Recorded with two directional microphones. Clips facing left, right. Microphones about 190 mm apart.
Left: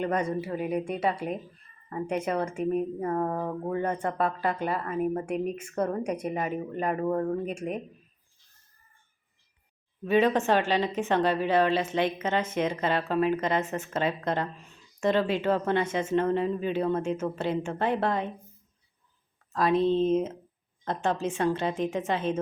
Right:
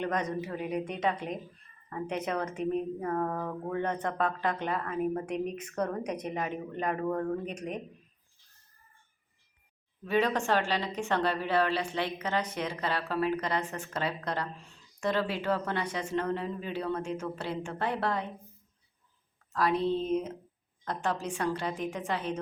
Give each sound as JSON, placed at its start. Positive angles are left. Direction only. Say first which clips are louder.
{"t": 0.0, "sound": "speech", "louder": "left 4 dB", "side_deg": 10}
{"t": 10.1, "sound": "a woman's voice", "louder": "left 5 dB", "side_deg": 20}
{"t": 19.5, "sound": "a woman's voice", "louder": "left 5 dB", "side_deg": 20}